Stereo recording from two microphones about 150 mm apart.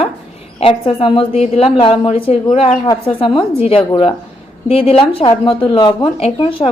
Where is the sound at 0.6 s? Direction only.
40° left (ahead or behind).